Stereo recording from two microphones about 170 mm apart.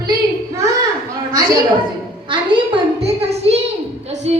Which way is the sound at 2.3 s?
30° right (ahead or behind).